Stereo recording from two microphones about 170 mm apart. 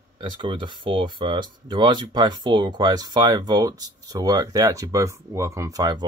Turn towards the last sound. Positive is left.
turn(degrees=-25)  # may be behind; listen again after turning